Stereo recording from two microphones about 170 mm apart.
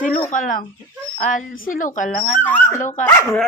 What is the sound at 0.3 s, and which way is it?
A woman's voice, 50° left (ahead or behind).